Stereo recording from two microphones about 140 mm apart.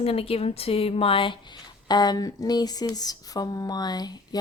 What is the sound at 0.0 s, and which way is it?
Speech, 45° left (ahead or behind).